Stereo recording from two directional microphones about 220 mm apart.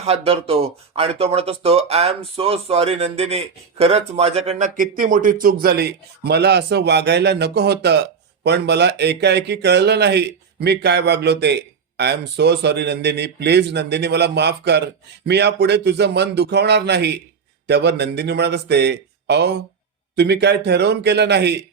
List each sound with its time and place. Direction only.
0.0 s speech: 25° right (ahead or behind); by 21.6 s 50° right (ahead or behind)